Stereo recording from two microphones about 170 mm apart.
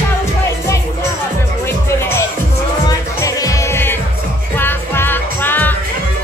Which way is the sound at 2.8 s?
20° left (ahead or behind).